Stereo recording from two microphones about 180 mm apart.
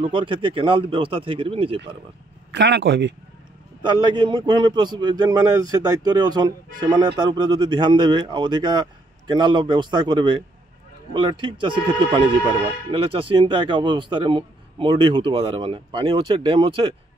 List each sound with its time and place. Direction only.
0.0 s speech: 30° right (ahead or behind)
2.5 s speech: 75° right (ahead or behind)
3.8 s speech: 25° right (ahead or behind)